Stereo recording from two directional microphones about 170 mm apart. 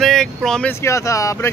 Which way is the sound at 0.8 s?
15° left (ahead or behind).